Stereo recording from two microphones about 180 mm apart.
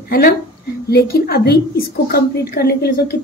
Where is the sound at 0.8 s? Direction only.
60° left (ahead or behind).